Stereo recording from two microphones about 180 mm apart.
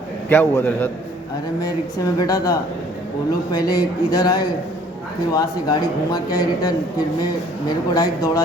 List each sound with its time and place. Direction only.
0.3 s a man's voice: 10° left (ahead or behind)
2.1 s speech: 20° left (ahead or behind)
7.9 s speech: 20° left (ahead or behind)